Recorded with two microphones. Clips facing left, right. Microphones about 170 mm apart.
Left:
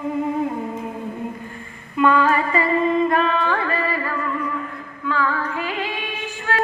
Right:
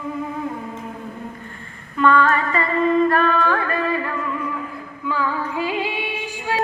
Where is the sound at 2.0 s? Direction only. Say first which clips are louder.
Even; 10° left (ahead or behind).